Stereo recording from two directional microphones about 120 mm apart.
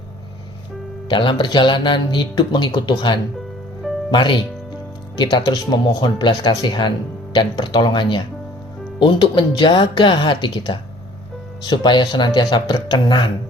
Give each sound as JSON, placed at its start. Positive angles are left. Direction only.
{"t": 1.1, "sound": "speech", "side_deg": 45}